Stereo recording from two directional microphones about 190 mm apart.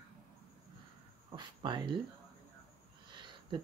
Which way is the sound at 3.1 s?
25° right (ahead or behind).